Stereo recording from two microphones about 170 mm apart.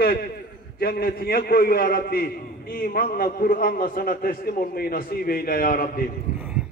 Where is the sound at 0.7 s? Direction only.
65° left (ahead or behind).